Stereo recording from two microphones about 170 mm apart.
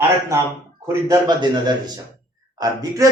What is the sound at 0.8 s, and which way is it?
Speech, 20° right (ahead or behind).